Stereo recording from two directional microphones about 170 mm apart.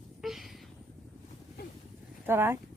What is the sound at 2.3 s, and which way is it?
Speech, 15° right (ahead or behind).